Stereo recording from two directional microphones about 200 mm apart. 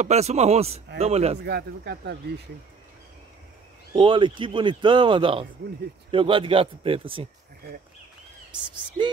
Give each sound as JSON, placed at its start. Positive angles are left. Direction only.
{"t": 0.0, "sound": "a man's voice", "side_deg": -35}
{"t": 1.4, "sound": "speech", "side_deg": -55}
{"t": 3.9, "sound": "speech", "side_deg": -25}
{"t": 8.5, "sound": "speech", "side_deg": -25}